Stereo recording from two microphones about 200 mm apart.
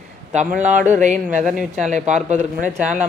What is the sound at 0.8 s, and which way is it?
Speech, 35° right (ahead or behind).